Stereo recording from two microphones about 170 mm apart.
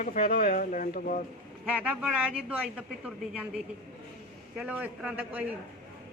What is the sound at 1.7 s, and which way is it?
Speech, 10° right (ahead or behind).